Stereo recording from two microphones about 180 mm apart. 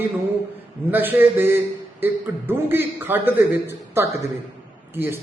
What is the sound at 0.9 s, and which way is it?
A man's voice, 10° right (ahead or behind).